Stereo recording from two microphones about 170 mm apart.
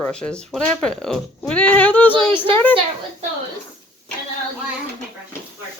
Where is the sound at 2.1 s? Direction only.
30° right (ahead or behind).